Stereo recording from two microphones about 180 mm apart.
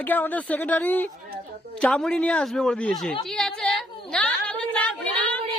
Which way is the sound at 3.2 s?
Centre (ahead or behind).